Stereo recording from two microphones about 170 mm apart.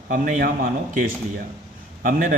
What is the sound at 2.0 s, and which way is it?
Speech, 55° right (ahead or behind).